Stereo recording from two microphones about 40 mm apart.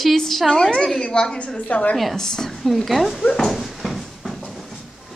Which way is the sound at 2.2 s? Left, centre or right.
Centre.